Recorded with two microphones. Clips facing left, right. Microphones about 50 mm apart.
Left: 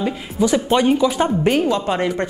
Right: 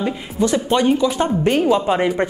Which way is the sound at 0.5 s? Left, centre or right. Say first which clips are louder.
Left 1 dB; centre.